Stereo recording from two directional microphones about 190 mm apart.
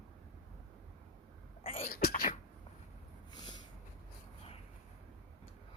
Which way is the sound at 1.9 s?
55° left (ahead or behind).